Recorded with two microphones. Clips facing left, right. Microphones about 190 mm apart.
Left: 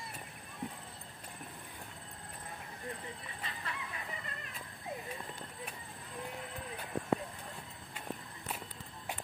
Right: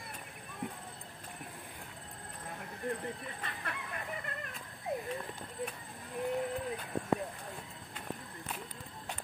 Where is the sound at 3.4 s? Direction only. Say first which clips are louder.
Right 2 dB; 55° right (ahead or behind).